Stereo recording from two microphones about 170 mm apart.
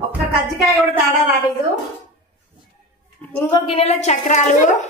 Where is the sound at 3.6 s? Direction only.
35° left (ahead or behind).